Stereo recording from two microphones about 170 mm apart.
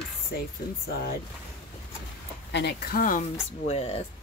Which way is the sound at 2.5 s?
70° left (ahead or behind).